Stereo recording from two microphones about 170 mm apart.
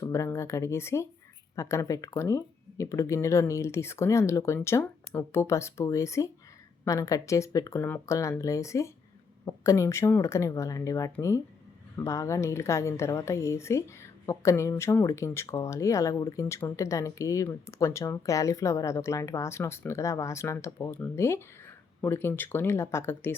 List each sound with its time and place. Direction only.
0.0 s a woman's voice: 15° left (ahead or behind)